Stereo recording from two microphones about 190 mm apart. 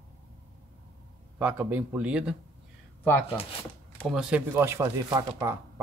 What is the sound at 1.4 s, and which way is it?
Speech, 10° right (ahead or behind).